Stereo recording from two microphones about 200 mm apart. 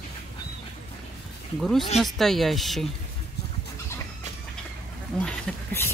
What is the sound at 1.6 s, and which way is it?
Speech, centre (ahead or behind).